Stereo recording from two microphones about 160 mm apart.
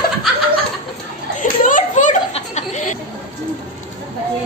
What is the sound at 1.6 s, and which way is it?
Children playing, 55° left (ahead or behind).